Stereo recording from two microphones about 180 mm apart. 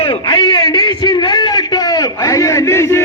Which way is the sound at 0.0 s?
25° left (ahead or behind).